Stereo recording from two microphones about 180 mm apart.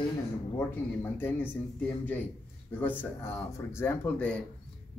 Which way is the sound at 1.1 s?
10° left (ahead or behind).